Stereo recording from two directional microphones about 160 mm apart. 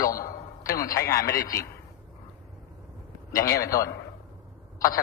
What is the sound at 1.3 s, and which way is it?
Speech, 20° left (ahead or behind).